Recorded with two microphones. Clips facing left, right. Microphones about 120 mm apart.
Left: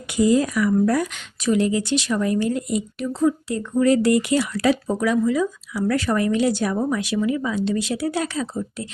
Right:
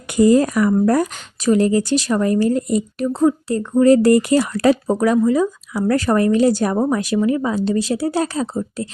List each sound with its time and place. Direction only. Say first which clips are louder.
0.1 s speech: right 5 dB; 50° right (ahead or behind)